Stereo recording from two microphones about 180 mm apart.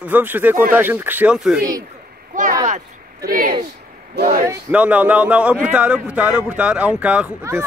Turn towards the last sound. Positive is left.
turn(degrees=-10)  # may be behind; listen again after turning